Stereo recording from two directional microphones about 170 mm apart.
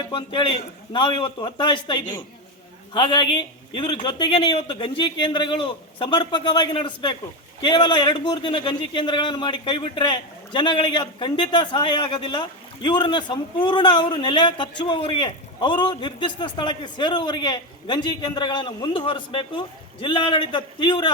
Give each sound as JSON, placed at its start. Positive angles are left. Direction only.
{"t": 0.1, "sound": "a man's voice", "side_deg": 30}